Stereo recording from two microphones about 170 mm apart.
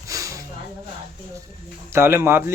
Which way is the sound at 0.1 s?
20° right (ahead or behind).